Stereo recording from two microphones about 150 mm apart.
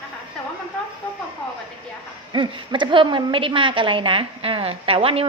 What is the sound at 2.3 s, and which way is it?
A woman's voice, 30° right (ahead or behind).